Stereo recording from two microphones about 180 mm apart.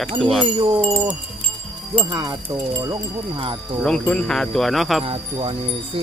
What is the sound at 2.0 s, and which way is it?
Speech, 25° right (ahead or behind).